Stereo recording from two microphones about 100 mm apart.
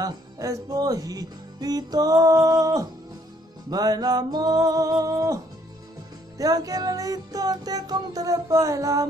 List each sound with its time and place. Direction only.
0.0 s music: 35° right (ahead or behind)